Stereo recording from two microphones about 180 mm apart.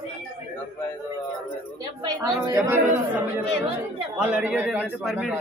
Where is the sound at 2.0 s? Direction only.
20° right (ahead or behind).